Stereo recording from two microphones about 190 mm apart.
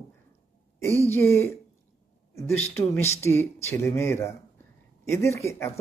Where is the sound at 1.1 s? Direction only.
15° left (ahead or behind).